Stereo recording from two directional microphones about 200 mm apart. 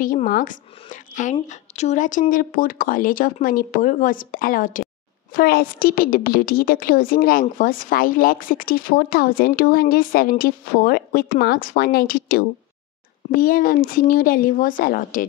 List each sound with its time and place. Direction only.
0.0 s a woman's voice: 45° left (ahead or behind)